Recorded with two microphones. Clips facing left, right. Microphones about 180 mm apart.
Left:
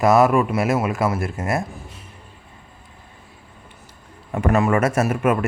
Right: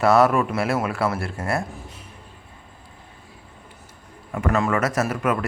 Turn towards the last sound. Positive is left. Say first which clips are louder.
# left 4 dB
turn(degrees=25)  # may be behind; listen again after turning